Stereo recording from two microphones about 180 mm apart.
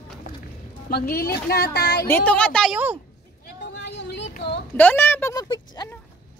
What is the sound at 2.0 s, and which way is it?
Speech, 10° left (ahead or behind).